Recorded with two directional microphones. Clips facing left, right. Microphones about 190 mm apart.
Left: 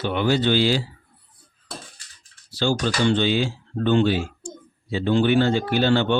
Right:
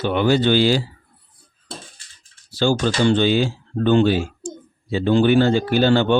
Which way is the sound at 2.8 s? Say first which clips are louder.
Right 3 dB; 45° right (ahead or behind).